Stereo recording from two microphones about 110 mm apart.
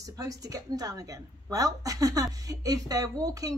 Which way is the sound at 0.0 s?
35° right (ahead or behind).